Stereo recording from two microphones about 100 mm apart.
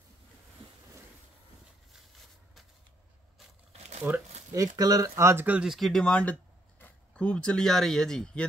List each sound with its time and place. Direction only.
3.7 s crumpling: 90° right
4.5 s speech: 35° right (ahead or behind)
5.1 s speech: 25° right (ahead or behind)
5.6 s speech: centre (ahead or behind)